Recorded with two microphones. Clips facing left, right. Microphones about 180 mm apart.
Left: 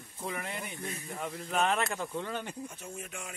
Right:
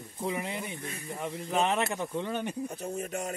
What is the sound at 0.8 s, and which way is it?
Speech, 60° right (ahead or behind).